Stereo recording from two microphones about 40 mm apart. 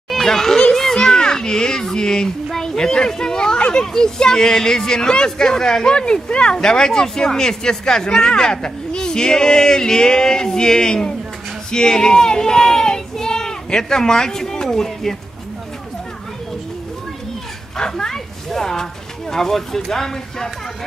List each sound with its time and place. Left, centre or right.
0.1 s a child's voice: centre
17.7 s speech: centre